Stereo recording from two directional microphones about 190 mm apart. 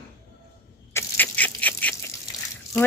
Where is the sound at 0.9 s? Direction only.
10° left (ahead or behind).